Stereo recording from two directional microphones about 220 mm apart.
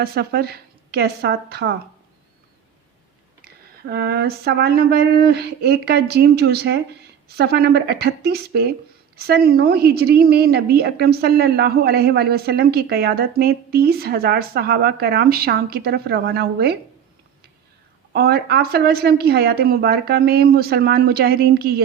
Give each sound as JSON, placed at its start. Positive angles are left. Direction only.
{"t": 0.0, "sound": "a woman's voice", "side_deg": -45}
{"t": 3.8, "sound": "a woman's voice", "side_deg": -45}
{"t": 18.1, "sound": "a woman's voice", "side_deg": -45}